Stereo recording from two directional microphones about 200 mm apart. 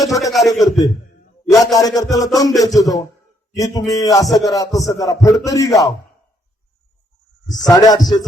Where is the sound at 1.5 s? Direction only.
20° left (ahead or behind).